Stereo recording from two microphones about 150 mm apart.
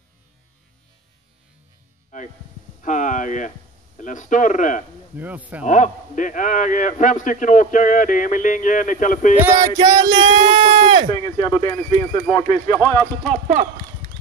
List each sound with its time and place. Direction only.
2.1 s music: 55° left (ahead or behind)
2.8 s a man's voice: 55° left (ahead or behind)
5.1 s speech: 10° right (ahead or behind)
5.7 s a man's voice: 60° left (ahead or behind)
9.8 s speech: 30° right (ahead or behind)
11.1 s speech: 30° left (ahead or behind)
13.3 s horse: 45° right (ahead or behind)